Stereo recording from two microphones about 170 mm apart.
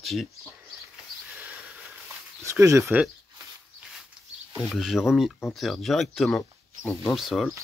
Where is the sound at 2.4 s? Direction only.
20° right (ahead or behind).